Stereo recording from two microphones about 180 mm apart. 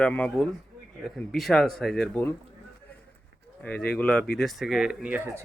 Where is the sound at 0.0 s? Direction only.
5° left (ahead or behind).